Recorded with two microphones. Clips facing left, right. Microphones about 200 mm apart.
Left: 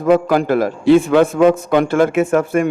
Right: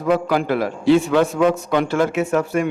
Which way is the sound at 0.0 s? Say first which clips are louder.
Left 5 dB; 50° left (ahead or behind).